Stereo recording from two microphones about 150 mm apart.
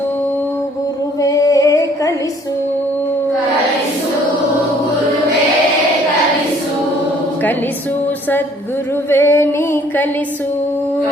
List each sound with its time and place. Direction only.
1.2 s music: 20° left (ahead or behind)
9.0 s music: 15° left (ahead or behind)